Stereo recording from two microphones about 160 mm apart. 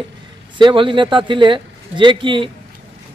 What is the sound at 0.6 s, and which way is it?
Speech, 30° right (ahead or behind).